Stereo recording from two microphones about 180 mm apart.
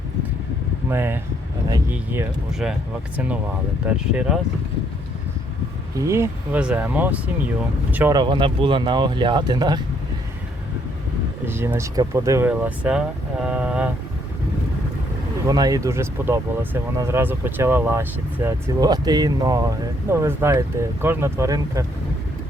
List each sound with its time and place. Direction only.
0.9 s speech: 10° right (ahead or behind)
6.0 s speech: 15° right (ahead or behind)
8.1 s speech: 25° right (ahead or behind)
11.4 s speech: 10° right (ahead or behind)
15.4 s speech: 20° right (ahead or behind)